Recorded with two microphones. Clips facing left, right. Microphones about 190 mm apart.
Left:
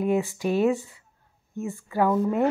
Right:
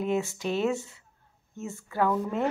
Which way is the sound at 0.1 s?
15° left (ahead or behind).